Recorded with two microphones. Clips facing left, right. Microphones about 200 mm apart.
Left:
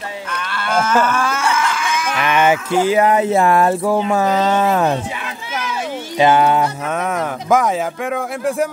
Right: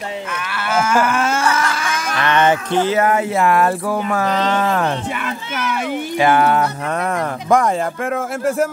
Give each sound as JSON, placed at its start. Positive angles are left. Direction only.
{"t": 0.7, "sound": "livestock", "side_deg": -10}
{"t": 1.2, "sound": "a sound", "side_deg": -30}
{"t": 2.1, "sound": "speech", "side_deg": 10}
{"t": 4.3, "sound": "speech", "side_deg": 5}
{"t": 6.1, "sound": "speech", "side_deg": 20}
{"t": 6.9, "sound": "speech", "side_deg": 0}